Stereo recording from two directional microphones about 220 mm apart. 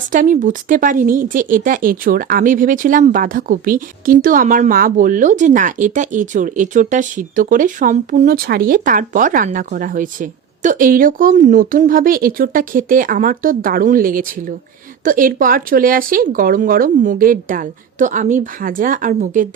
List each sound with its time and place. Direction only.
0.1 s speech: 35° right (ahead or behind)